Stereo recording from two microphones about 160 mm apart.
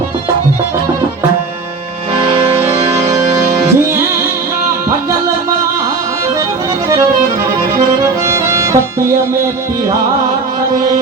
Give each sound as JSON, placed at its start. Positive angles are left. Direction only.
{"t": 2.1, "sound": "music", "side_deg": -35}
{"t": 2.6, "sound": "music", "side_deg": -20}
{"t": 8.5, "sound": "music", "side_deg": -20}